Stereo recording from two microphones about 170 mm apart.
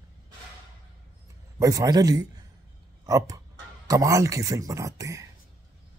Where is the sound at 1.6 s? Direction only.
20° right (ahead or behind).